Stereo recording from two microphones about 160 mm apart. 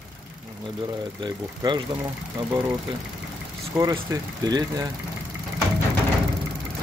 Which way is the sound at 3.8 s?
15° right (ahead or behind).